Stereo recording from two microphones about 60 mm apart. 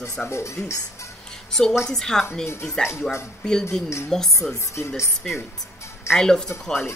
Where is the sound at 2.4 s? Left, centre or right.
Left.